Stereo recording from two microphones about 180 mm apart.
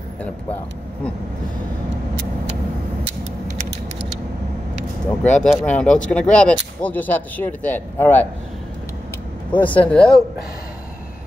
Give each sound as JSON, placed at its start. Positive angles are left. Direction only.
{"t": 5.2, "sound": "speech", "side_deg": 5}
{"t": 9.5, "sound": "speech", "side_deg": 10}